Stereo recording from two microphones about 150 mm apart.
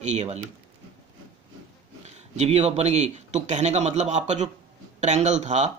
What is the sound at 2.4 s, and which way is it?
Speech, 45° right (ahead or behind).